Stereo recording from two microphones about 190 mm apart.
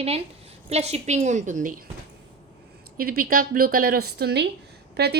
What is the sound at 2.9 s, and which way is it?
A woman's voice, 50° right (ahead or behind).